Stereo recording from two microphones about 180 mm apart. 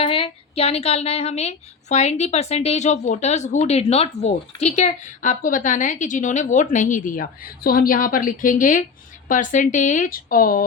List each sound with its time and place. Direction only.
0.0 s a woman's voice: 30° left (ahead or behind); by 10.7 s 50° left (ahead or behind)